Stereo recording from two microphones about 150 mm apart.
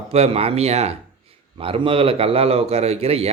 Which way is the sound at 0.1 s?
40° right (ahead or behind).